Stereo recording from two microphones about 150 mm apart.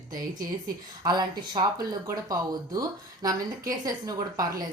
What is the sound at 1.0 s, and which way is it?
Speech, 25° right (ahead or behind).